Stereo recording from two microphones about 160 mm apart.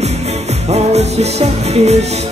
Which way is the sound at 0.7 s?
40° right (ahead or behind).